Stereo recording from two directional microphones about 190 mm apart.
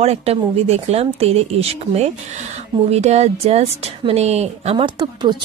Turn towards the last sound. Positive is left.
turn(degrees=-20)  # may be behind; listen again after turning